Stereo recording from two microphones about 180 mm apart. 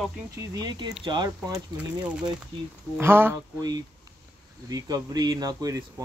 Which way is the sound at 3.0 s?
15° right (ahead or behind).